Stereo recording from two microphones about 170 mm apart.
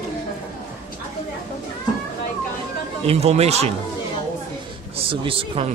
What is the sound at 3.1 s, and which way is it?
Speech, 40° right (ahead or behind).